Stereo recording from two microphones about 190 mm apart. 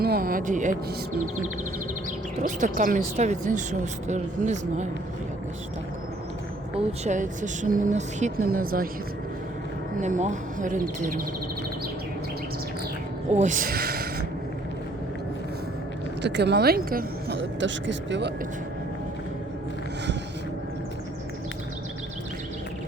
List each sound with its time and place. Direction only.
0.0 s speech: 50° right (ahead or behind)
2.4 s speech: 45° right (ahead or behind)
6.7 s speech: 35° right (ahead or behind)
10.0 s speech: 40° right (ahead or behind)
13.3 s speech: 40° right (ahead or behind)
16.2 s a woman's voice: 65° right (ahead or behind)